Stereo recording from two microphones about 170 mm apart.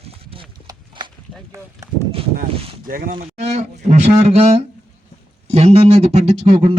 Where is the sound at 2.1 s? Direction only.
35° right (ahead or behind).